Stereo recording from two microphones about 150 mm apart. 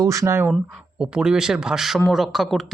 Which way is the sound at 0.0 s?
20° right (ahead or behind).